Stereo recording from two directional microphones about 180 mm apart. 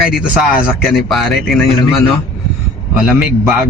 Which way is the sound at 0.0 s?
5° right (ahead or behind).